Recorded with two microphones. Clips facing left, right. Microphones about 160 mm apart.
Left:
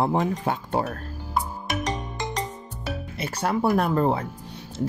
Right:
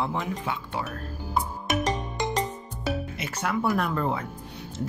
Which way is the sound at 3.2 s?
35° left (ahead or behind).